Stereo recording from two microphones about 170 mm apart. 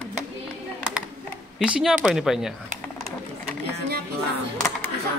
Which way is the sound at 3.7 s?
65° right (ahead or behind).